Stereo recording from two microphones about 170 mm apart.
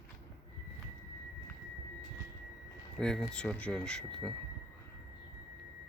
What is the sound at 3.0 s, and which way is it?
Speech, 5° left (ahead or behind).